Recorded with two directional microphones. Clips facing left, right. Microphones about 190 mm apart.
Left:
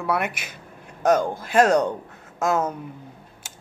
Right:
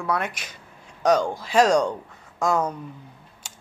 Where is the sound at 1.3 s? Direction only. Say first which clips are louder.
Left 1 dB; 55° left (ahead or behind).